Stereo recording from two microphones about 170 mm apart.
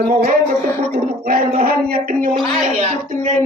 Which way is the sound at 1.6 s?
60° right (ahead or behind).